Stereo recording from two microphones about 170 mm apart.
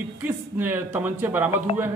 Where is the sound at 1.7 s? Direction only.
35° left (ahead or behind).